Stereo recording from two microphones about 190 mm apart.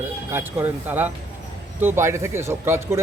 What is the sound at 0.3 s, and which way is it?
Speech, 10° right (ahead or behind).